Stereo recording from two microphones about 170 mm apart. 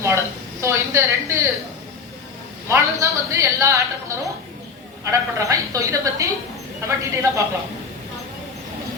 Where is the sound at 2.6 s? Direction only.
15° right (ahead or behind).